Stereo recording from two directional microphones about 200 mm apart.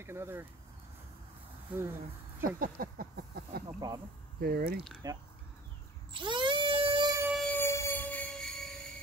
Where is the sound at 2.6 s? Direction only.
45° right (ahead or behind).